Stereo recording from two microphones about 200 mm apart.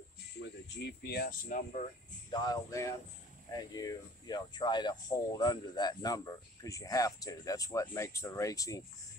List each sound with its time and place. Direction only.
0.7 s speech: 55° left (ahead or behind); by 1.9 s 40° left (ahead or behind)
2.3 s speech: 20° left (ahead or behind)